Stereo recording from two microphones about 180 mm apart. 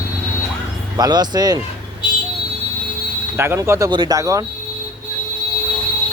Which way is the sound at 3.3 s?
15° right (ahead or behind).